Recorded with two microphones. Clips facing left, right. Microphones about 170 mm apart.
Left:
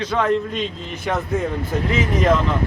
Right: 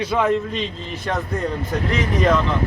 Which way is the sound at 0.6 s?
Centre (ahead or behind).